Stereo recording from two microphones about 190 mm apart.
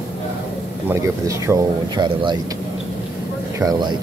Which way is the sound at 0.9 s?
15° right (ahead or behind).